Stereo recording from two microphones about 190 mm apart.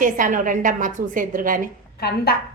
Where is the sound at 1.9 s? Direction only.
55° left (ahead or behind).